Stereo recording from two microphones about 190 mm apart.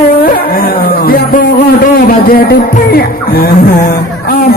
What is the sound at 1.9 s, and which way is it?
A woman's voice, 50° left (ahead or behind).